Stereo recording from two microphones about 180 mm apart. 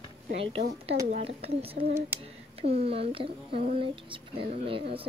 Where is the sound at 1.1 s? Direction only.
35° right (ahead or behind).